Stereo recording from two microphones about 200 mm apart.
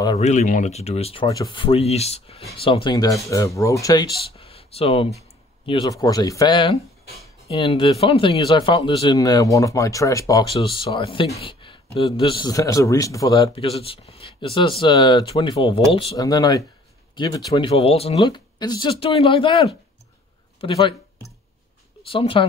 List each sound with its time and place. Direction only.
0.2 s speech: 35° left (ahead or behind)
1.2 s a man's voice: 20° left (ahead or behind)
10.6 s a man's voice: 25° left (ahead or behind)
20.6 s a man's voice: 25° left (ahead or behind)
22.1 s a man's voice: 25° left (ahead or behind)